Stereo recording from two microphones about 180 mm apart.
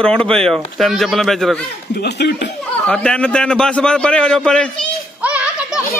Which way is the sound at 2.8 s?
5° left (ahead or behind).